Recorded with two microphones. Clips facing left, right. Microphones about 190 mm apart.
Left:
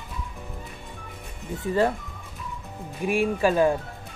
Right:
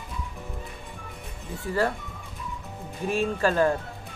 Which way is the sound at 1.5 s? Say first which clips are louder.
Left 3 dB; 20° left (ahead or behind).